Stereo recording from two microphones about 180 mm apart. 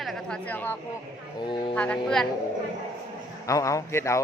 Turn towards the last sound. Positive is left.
turn(degrees=15)  # may be behind; listen again after turning